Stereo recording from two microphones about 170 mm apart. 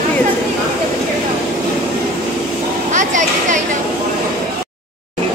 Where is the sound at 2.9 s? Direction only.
45° right (ahead or behind).